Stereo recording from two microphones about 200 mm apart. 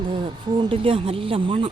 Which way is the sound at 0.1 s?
25° right (ahead or behind).